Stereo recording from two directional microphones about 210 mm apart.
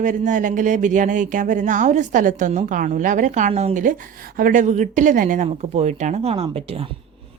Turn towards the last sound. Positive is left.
turn(degrees=-30)  # may be behind; listen again after turning